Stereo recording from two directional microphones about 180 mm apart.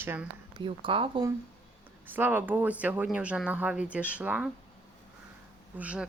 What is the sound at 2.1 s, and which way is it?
Speech, 10° right (ahead or behind).